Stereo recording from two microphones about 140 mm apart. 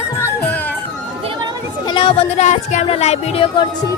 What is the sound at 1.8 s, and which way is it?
Music, 35° left (ahead or behind).